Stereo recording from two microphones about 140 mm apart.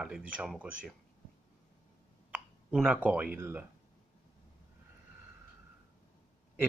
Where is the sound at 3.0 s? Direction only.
10° right (ahead or behind).